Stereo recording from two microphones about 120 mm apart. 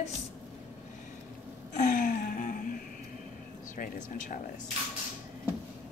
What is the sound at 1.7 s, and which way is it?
Gasp, 90° left.